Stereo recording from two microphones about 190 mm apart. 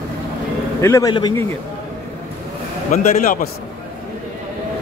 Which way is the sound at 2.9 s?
40° left (ahead or behind).